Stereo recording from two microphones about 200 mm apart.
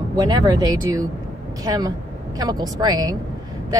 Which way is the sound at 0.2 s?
20° right (ahead or behind).